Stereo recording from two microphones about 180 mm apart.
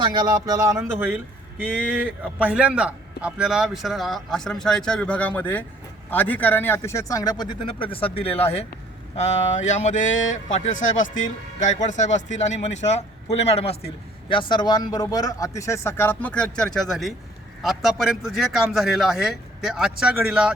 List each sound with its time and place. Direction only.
0.0 s a man's voice: 25° right (ahead or behind); by 10.1 s 40° left (ahead or behind)
10.1 s speech: 90° left
10.3 s a man's voice: 45° left (ahead or behind); by 20.5 s 5° right (ahead or behind)